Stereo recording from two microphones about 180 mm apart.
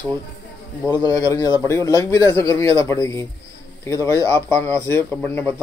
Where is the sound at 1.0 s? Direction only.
20° left (ahead or behind).